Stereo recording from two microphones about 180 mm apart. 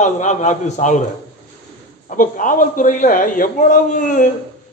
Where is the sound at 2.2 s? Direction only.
50° left (ahead or behind).